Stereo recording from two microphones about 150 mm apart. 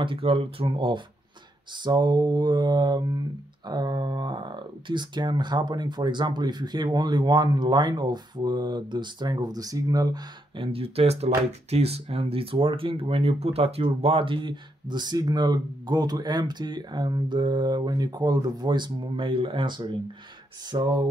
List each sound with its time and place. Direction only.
0.0 s speech: 35° right (ahead or behind)